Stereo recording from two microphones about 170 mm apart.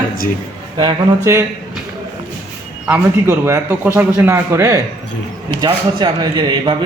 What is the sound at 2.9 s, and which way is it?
A man's voice, 15° right (ahead or behind).